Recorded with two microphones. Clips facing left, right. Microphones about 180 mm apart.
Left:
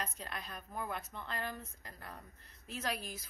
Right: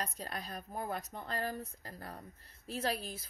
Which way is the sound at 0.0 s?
35° right (ahead or behind).